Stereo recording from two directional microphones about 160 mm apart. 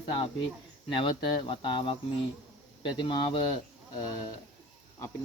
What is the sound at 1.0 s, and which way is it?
Speech, 30° left (ahead or behind).